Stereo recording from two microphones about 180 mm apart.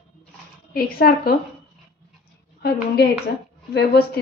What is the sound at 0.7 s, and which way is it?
Speech, 55° left (ahead or behind).